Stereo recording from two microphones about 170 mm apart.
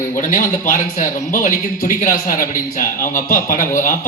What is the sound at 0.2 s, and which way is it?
A man's voice, 50° left (ahead or behind).